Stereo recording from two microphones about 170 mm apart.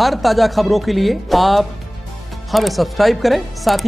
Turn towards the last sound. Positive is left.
turn(degrees=0)  # may be behind; listen again after turning